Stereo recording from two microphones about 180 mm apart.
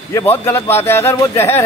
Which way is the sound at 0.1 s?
10° left (ahead or behind).